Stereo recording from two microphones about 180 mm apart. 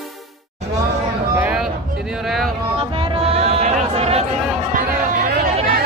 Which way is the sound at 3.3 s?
35° right (ahead or behind).